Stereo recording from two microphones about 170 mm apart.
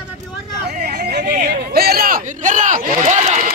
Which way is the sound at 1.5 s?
65° right (ahead or behind).